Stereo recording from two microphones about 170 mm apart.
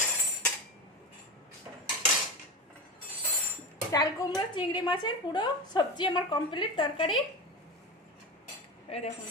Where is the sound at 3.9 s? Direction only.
25° left (ahead or behind).